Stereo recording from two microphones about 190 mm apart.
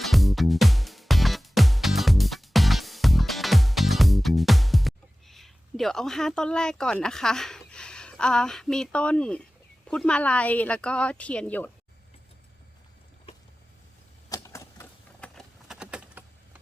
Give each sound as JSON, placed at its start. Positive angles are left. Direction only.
{"t": 0.0, "sound": "music", "side_deg": 0}
{"t": 9.9, "sound": "speech", "side_deg": 5}
{"t": 14.3, "sound": "typewriter", "side_deg": 15}
{"t": 15.2, "sound": "typing", "side_deg": 0}